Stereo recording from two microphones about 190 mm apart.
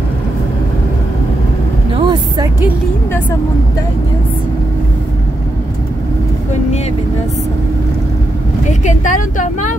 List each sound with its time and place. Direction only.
2.0 s vehicle: 20° right (ahead or behind)
8.6 s speech: 40° left (ahead or behind)